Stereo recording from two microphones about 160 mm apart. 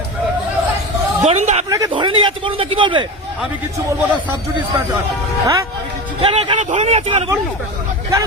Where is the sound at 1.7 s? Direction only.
25° right (ahead or behind).